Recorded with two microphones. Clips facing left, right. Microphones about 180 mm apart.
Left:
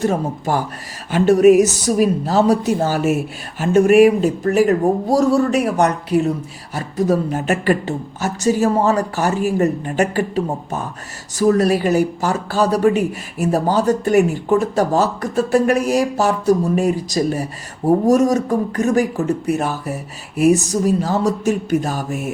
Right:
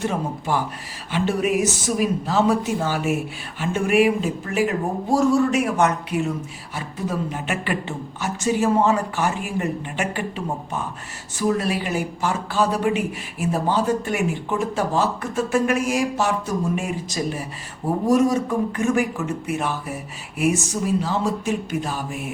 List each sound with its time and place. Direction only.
0.0 s speech: 40° left (ahead or behind)